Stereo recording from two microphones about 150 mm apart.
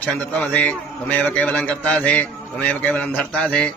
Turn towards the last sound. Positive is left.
turn(degrees=5)  # may be behind; listen again after turning